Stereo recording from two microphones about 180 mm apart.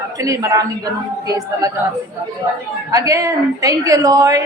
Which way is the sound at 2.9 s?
20° right (ahead or behind).